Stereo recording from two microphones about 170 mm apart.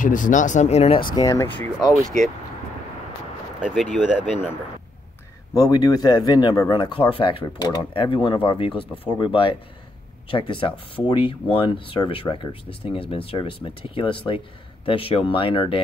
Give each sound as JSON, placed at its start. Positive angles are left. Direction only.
{"t": 0.0, "sound": "speech", "side_deg": 50}
{"t": 1.1, "sound": "speech", "side_deg": 20}
{"t": 3.7, "sound": "speech", "side_deg": 0}
{"t": 5.5, "sound": "speech", "side_deg": 20}